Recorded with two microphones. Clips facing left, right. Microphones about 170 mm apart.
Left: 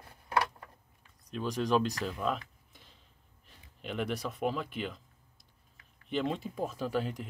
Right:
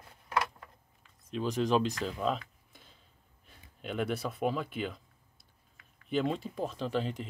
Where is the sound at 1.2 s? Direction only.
Centre (ahead or behind).